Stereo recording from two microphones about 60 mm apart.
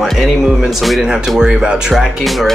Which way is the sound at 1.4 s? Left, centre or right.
Centre.